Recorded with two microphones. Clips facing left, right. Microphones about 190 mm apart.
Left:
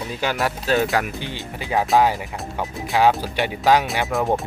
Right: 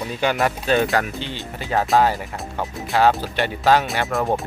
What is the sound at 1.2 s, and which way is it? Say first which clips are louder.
Speech: even; 15° left (ahead or behind).